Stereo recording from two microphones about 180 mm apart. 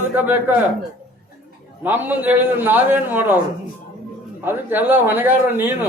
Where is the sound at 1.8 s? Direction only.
10° right (ahead or behind).